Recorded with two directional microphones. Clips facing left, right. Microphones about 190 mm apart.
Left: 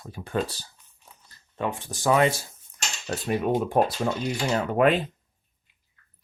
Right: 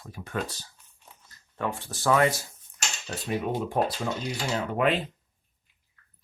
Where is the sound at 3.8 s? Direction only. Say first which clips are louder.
Left 4 dB; 55° left (ahead or behind).